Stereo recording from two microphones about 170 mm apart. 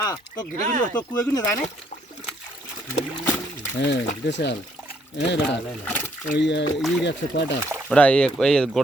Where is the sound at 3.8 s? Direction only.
90° left.